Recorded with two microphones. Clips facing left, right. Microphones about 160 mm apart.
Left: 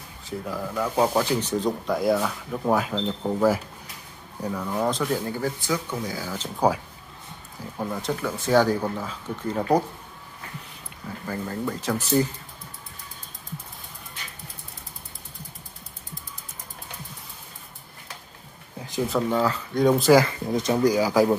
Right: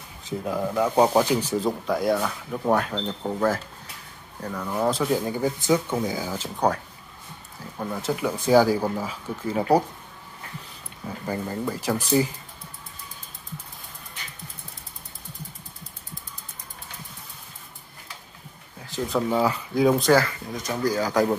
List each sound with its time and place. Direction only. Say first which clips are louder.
0.2 s speech: right 4 dB; 20° right (ahead or behind); by 4.6 s 10° left (ahead or behind)
4.6 s speech: right 2 dB; 5° right (ahead or behind)
7.7 s speech: left 1 dB; 10° left (ahead or behind)
8.0 s speech: right 2 dB; 10° right (ahead or behind)
11.2 s speech: right 1 dB; 10° right (ahead or behind)
19.0 s speech: right 1 dB; 5° right (ahead or behind)
20.2 s speech: left 7 dB; 25° left (ahead or behind); by 21.4 s 5° left (ahead or behind)